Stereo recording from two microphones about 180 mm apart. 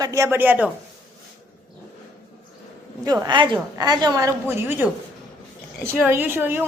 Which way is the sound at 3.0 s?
20° right (ahead or behind).